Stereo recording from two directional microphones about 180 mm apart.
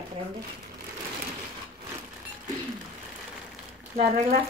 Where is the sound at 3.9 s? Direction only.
40° right (ahead or behind).